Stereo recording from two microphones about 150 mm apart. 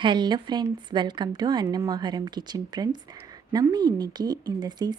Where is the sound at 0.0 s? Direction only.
30° right (ahead or behind).